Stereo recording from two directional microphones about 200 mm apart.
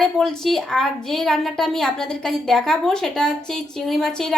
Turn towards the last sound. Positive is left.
turn(degrees=5)  # may be behind; listen again after turning